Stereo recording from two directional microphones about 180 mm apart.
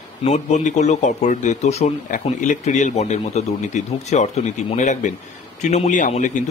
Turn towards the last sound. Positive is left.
turn(degrees=40)  # may be behind; listen again after turning